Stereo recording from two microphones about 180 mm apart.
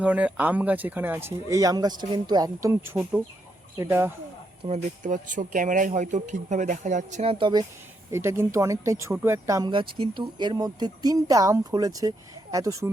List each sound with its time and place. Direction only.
0.0 s speech: 10° right (ahead or behind)
4.6 s speech: 40° right (ahead or behind)
8.1 s speech: 15° right (ahead or behind)